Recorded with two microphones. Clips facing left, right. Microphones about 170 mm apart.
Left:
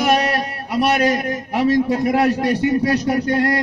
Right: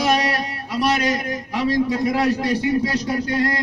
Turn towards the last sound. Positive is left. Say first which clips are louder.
# left 4 dB
turn(degrees=55)  # may be behind; listen again after turning